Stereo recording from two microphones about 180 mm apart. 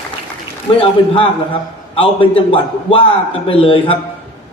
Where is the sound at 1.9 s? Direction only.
30° left (ahead or behind).